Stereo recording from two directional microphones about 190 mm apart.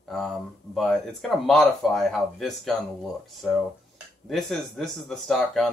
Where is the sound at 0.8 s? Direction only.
Centre (ahead or behind).